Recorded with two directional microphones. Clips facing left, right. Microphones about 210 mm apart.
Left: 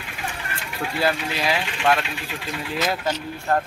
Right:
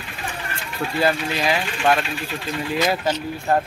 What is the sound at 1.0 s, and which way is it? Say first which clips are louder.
Speech: right 3 dB; centre (ahead or behind).